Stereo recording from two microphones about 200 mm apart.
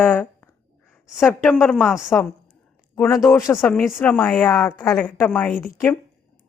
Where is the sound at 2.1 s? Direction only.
15° left (ahead or behind).